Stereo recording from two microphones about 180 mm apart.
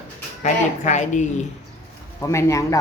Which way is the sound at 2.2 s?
15° left (ahead or behind).